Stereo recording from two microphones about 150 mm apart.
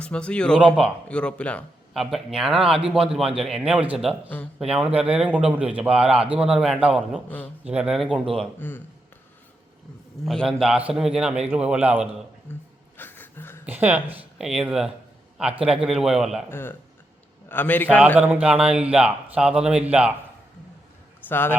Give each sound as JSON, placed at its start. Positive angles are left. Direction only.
{"t": 0.0, "sound": "a man's voice", "side_deg": 5}
{"t": 2.0, "sound": "a man's voice", "side_deg": 0}
{"t": 7.3, "sound": "speech", "side_deg": 10}
{"t": 7.6, "sound": "a man's voice", "side_deg": -5}
{"t": 8.5, "sound": "speech", "side_deg": 15}
{"t": 10.2, "sound": "a man's voice", "side_deg": 0}
{"t": 13.0, "sound": "a sound", "side_deg": 15}
{"t": 13.7, "sound": "a man's voice", "side_deg": -10}
{"t": 16.5, "sound": "speech", "side_deg": 15}
{"t": 18.2, "sound": "a man's voice", "side_deg": -10}
{"t": 21.2, "sound": "a man's voice", "side_deg": 15}